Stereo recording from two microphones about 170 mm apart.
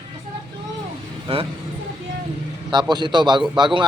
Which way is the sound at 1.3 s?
35° right (ahead or behind).